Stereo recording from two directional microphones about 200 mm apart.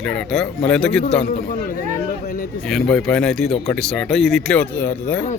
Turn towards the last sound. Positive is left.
turn(degrees=10)  # may be behind; listen again after turning